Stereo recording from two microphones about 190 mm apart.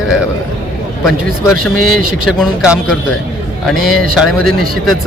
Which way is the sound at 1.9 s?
5° right (ahead or behind).